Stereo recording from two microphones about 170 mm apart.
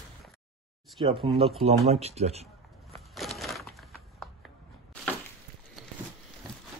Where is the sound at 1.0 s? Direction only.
35° right (ahead or behind).